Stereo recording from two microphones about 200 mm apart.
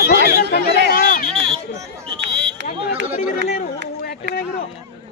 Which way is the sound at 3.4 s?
30° left (ahead or behind).